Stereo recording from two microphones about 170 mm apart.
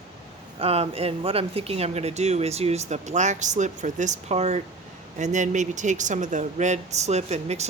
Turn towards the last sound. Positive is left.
turn(degrees=-40)  # may be behind; listen again after turning